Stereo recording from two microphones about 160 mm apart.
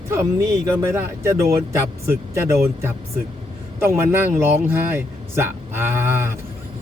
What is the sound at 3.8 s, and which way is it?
Speech, 15° right (ahead or behind).